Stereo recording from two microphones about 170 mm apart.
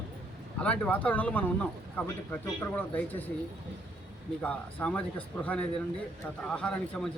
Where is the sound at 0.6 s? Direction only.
10° left (ahead or behind).